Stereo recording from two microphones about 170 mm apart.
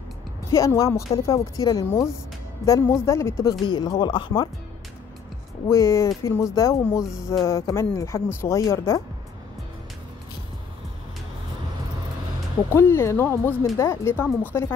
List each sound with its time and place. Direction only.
0.5 s speech: 20° left (ahead or behind)
5.7 s speech: 20° left (ahead or behind)
12.6 s speech: 15° left (ahead or behind)